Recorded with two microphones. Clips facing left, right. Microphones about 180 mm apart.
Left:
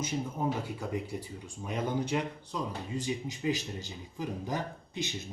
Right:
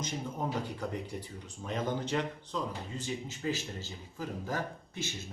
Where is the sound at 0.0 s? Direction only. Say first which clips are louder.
Left 3 dB; 10° left (ahead or behind).